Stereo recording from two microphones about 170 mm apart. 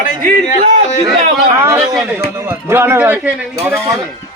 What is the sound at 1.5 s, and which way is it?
Speech, 15° right (ahead or behind).